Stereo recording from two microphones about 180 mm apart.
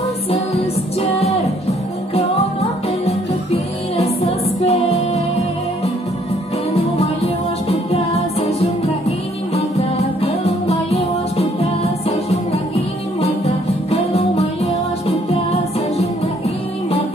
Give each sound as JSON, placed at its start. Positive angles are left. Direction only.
{"t": 1.2, "sound": "music", "side_deg": 35}
{"t": 3.9, "sound": "music", "side_deg": 35}
{"t": 7.6, "sound": "music", "side_deg": 35}
{"t": 13.2, "sound": "music", "side_deg": 35}